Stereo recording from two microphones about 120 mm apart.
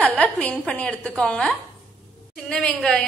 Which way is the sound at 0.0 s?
10° left (ahead or behind).